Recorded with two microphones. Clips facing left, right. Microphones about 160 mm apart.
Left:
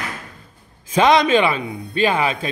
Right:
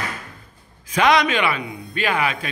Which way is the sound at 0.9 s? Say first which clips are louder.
Left 4 dB; 25° left (ahead or behind).